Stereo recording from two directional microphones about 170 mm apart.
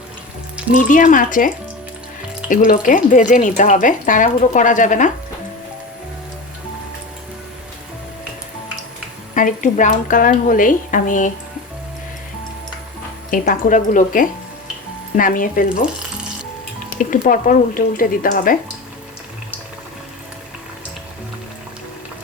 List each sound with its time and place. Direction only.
0.7 s speech: 50° left (ahead or behind)
9.3 s speech: 50° left (ahead or behind)
13.3 s speech: 50° left (ahead or behind)
16.9 s speech: 50° left (ahead or behind)